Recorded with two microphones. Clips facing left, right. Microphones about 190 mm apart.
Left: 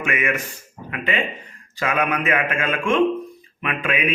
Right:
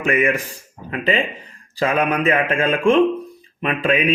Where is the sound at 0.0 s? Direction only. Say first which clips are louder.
Right 5 dB; 30° right (ahead or behind).